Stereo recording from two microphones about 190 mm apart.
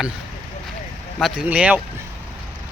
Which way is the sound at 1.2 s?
5° right (ahead or behind).